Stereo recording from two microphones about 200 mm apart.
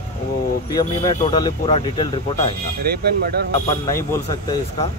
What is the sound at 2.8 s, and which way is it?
Speech, 50° right (ahead or behind).